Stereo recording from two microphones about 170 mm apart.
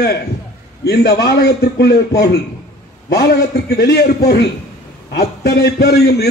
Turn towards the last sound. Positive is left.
turn(degrees=75)  # may be behind; listen again after turning